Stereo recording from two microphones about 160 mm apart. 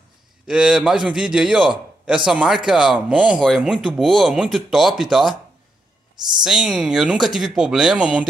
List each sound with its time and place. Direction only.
0.5 s speech: 5° right (ahead or behind)
6.4 s speech: 5° right (ahead or behind)